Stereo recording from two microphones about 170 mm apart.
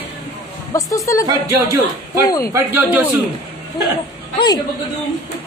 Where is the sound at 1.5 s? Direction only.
15° right (ahead or behind).